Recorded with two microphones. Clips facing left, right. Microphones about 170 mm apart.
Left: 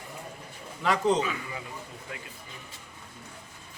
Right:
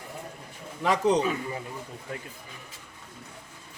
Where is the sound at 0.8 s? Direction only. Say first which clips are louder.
Right 2 dB; 15° right (ahead or behind).